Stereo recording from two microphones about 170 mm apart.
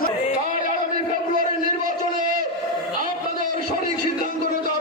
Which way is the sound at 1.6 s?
55° right (ahead or behind).